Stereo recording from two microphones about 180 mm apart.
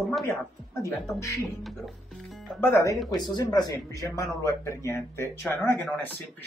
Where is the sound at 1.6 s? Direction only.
Centre (ahead or behind).